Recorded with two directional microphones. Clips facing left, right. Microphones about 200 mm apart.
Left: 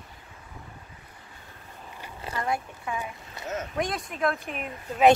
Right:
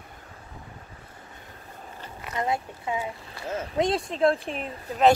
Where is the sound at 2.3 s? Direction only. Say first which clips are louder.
Right 2 dB; 20° right (ahead or behind).